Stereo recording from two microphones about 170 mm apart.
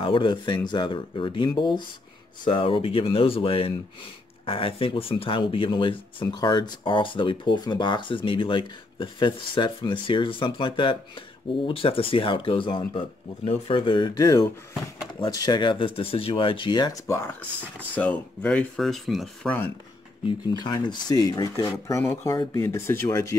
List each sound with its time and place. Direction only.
0.0 s speech: 30° left (ahead or behind); by 19.5 s centre (ahead or behind)
20.2 s speech: 25° left (ahead or behind)